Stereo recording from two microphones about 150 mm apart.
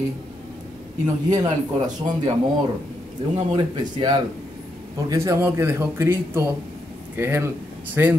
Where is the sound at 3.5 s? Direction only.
30° right (ahead or behind).